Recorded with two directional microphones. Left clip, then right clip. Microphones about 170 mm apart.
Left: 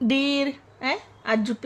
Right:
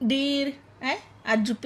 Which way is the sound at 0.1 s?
40° left (ahead or behind).